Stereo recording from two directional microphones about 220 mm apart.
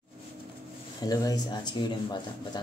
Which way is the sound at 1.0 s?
15° left (ahead or behind).